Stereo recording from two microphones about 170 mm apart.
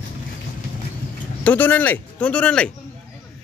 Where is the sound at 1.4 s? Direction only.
10° left (ahead or behind).